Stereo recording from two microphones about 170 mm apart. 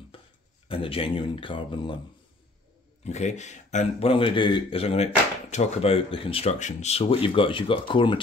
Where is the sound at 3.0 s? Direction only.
40° left (ahead or behind).